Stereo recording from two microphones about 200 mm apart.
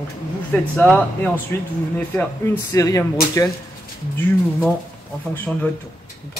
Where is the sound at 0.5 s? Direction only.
5° left (ahead or behind).